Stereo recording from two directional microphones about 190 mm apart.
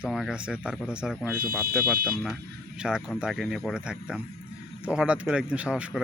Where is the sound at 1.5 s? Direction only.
50° right (ahead or behind).